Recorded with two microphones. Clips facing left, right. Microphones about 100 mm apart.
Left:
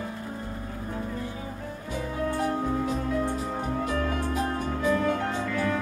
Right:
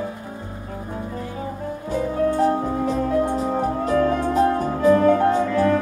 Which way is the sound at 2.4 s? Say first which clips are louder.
Right 7 dB; 30° right (ahead or behind).